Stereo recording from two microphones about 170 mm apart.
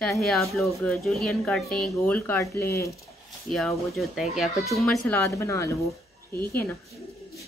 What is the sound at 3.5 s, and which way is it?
A woman's voice, centre (ahead or behind).